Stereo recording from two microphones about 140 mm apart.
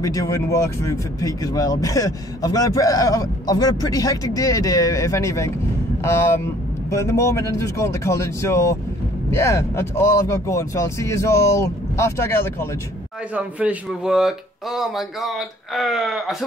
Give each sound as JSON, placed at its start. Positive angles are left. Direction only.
{"t": 0.0, "sound": "speech", "side_deg": 20}
{"t": 6.9, "sound": "speech", "side_deg": 20}
{"t": 13.3, "sound": "a man's voice", "side_deg": -10}